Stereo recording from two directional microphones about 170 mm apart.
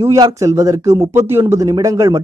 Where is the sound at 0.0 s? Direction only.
20° right (ahead or behind).